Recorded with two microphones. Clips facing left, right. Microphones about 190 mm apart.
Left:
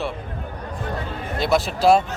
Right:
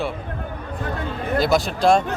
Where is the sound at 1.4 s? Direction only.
Centre (ahead or behind).